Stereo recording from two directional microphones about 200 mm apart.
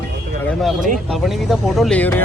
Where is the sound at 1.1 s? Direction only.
Centre (ahead or behind).